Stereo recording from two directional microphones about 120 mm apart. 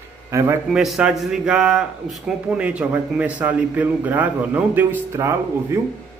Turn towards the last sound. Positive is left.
turn(degrees=-25)  # may be behind; listen again after turning